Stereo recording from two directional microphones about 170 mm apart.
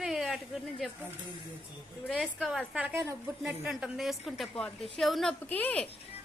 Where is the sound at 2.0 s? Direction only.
Centre (ahead or behind).